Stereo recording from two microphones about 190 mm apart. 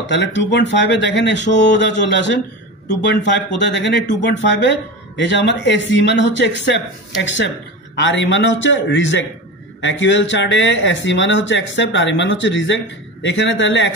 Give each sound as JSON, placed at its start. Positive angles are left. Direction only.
{"t": 0.0, "sound": "speech", "side_deg": 70}